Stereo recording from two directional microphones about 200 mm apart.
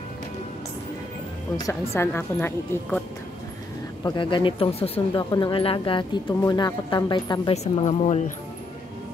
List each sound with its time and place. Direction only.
2.0 s a woman's voice: 10° left (ahead or behind)
4.0 s speech: 25° left (ahead or behind)
7.5 s a woman's voice: 35° left (ahead or behind)